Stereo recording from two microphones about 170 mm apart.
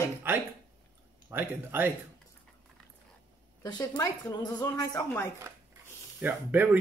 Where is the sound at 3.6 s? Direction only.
25° left (ahead or behind).